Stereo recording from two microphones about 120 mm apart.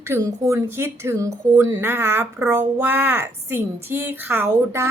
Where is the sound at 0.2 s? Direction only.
25° right (ahead or behind).